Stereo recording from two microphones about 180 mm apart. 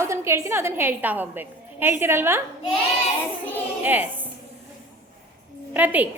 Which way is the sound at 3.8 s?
10° right (ahead or behind).